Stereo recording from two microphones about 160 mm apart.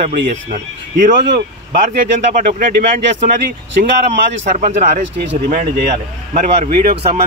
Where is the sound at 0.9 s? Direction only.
90° right.